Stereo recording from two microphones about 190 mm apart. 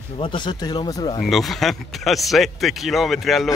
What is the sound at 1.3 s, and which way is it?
A man's voice, centre (ahead or behind).